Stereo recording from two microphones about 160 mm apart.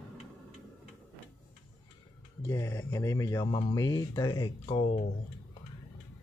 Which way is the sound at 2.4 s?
15° left (ahead or behind).